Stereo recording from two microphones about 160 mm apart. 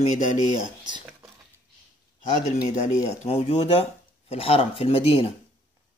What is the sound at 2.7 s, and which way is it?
Speech, 45° left (ahead or behind).